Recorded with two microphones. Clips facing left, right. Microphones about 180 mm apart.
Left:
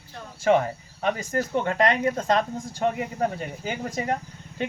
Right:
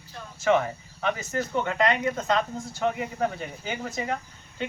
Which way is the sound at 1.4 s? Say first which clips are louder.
Left 2 dB; 40° left (ahead or behind).